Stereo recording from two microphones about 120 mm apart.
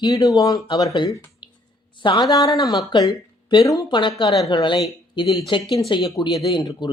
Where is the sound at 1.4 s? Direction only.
40° left (ahead or behind).